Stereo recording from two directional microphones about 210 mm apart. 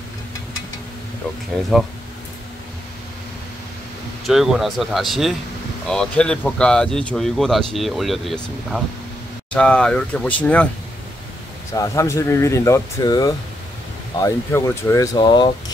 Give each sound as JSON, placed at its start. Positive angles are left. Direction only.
{"t": 4.3, "sound": "speech", "side_deg": 0}
{"t": 11.7, "sound": "speech", "side_deg": 15}